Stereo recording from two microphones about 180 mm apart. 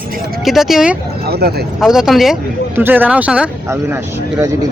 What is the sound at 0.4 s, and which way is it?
Speech, centre (ahead or behind).